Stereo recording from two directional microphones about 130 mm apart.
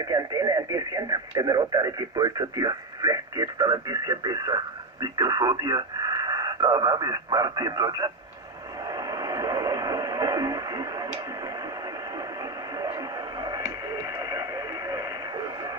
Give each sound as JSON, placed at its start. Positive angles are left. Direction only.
{"t": 0.0, "sound": "speech", "side_deg": -30}
{"t": 8.9, "sound": "a sound", "side_deg": -30}
{"t": 13.4, "sound": "radio", "side_deg": -30}